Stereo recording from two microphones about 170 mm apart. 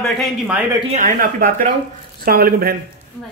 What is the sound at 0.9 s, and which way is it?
Speech, 55° right (ahead or behind).